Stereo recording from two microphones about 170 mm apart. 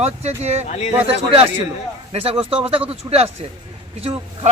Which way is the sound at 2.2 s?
35° right (ahead or behind).